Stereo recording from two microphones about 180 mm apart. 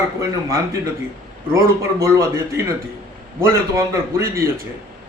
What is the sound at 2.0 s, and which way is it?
Speech, 15° right (ahead or behind).